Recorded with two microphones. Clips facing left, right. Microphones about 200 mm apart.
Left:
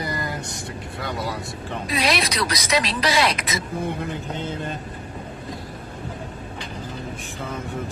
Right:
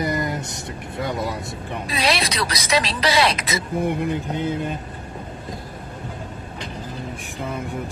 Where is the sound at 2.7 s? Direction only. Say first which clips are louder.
Right 2 dB; 30° right (ahead or behind).